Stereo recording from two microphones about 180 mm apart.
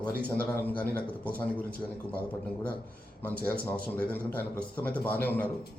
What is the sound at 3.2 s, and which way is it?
A man's voice, 10° left (ahead or behind).